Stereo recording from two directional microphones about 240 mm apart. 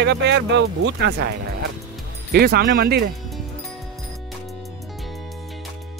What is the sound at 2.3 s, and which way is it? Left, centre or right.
Speech, right.